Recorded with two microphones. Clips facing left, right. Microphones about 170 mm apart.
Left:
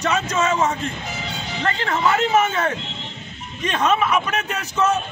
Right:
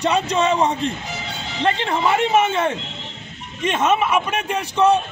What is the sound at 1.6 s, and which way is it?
Speech, 25° right (ahead or behind).